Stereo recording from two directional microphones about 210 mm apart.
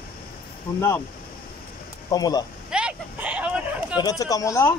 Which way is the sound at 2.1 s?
20° left (ahead or behind).